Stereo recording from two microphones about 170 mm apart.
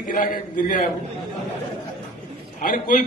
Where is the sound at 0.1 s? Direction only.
55° left (ahead or behind).